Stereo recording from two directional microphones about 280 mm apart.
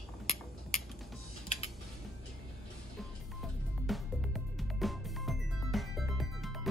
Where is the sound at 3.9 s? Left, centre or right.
Centre.